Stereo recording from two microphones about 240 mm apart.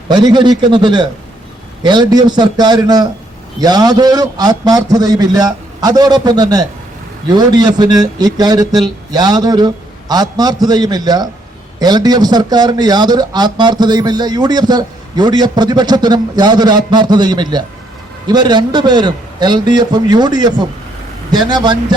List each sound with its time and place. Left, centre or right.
0.1 s a man's voice: centre